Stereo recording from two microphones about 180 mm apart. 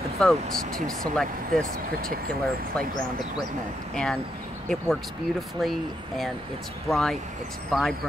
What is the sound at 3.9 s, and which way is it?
Speech, 5° left (ahead or behind).